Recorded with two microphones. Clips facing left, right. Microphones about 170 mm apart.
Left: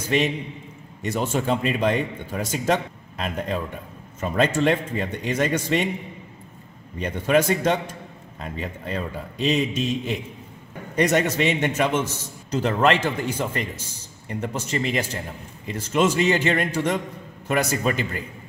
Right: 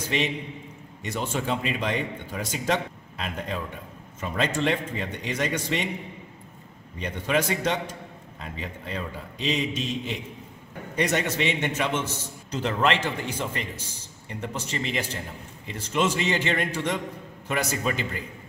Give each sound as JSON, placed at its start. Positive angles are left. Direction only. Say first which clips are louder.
{"t": 0.1, "sound": "a man's voice", "louder": "left 6 dB", "side_deg": 45}
{"t": 7.0, "sound": "a man's voice", "louder": "left 6 dB", "side_deg": 45}